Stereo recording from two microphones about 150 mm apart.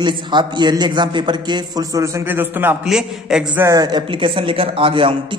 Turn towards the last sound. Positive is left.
turn(degrees=-35)  # may be behind; listen again after turning